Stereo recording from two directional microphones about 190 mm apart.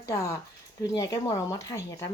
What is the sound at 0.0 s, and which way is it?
Speech, 15° left (ahead or behind).